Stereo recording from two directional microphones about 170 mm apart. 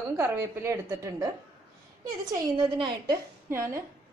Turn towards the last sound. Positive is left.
turn(degrees=-15)  # may be behind; listen again after turning